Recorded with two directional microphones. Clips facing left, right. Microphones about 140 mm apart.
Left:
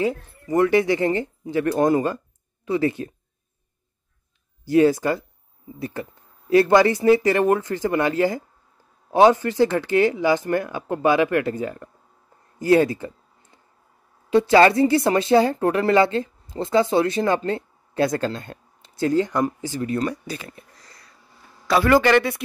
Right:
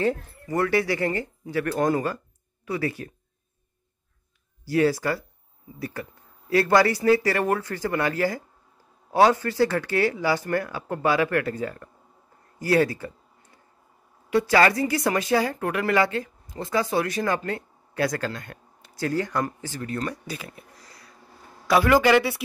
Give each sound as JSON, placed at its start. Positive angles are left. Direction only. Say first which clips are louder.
{"t": 0.0, "sound": "a woman's voice", "louder": "left 1 dB", "side_deg": 20}
{"t": 4.6, "sound": "a woman's voice", "louder": "left 5 dB", "side_deg": 20}
{"t": 12.5, "sound": "a sound", "louder": "left 4 dB", "side_deg": 20}
{"t": 14.3, "sound": "a woman's voice", "louder": "left 5 dB", "side_deg": 25}